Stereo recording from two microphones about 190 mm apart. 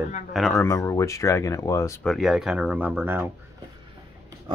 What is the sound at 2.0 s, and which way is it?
Speech, centre (ahead or behind).